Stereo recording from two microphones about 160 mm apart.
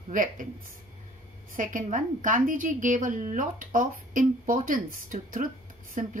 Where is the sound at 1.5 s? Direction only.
55° right (ahead or behind).